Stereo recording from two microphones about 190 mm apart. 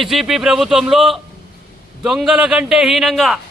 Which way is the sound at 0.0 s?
Centre (ahead or behind).